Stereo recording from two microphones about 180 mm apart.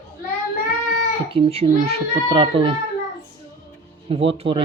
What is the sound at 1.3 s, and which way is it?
Speech, 30° right (ahead or behind).